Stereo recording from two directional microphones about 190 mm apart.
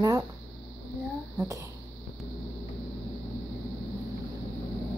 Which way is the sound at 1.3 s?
15° right (ahead or behind).